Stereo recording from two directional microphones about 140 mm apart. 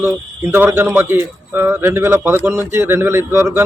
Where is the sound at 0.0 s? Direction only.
15° right (ahead or behind).